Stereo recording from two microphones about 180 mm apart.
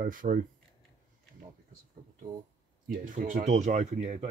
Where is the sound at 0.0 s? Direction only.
50° right (ahead or behind).